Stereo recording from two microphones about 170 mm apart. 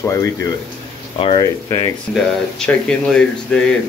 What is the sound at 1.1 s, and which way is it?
Speech, 35° left (ahead or behind).